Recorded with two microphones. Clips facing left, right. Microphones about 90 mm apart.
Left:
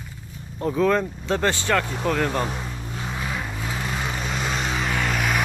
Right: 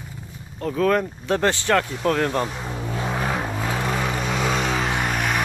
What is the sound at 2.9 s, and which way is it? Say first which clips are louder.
Vehicle: right 6 dB; 80° right.